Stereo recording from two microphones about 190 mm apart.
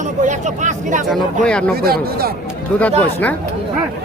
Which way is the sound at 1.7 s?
55° right (ahead or behind).